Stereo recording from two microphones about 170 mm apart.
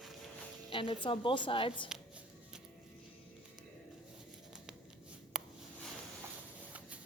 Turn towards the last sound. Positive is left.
turn(degrees=-5)  # may be behind; listen again after turning